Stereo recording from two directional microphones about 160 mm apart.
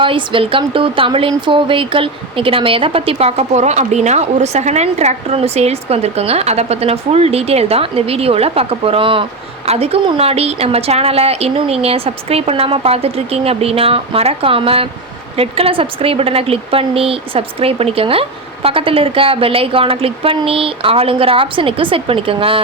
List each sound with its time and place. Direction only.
0.0 s a woman's voice: 30° right (ahead or behind)